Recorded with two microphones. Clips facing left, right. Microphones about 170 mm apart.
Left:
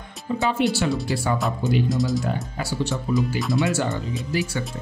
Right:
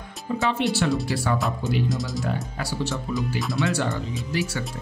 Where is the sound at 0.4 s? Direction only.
Centre (ahead or behind).